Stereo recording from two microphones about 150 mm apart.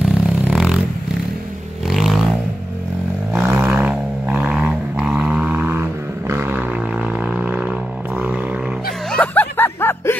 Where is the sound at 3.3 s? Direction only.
15° right (ahead or behind).